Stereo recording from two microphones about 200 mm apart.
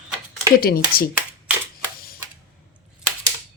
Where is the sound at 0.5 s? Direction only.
45° left (ahead or behind).